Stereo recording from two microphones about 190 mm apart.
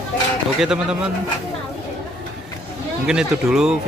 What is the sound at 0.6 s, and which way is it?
Speech, 5° right (ahead or behind).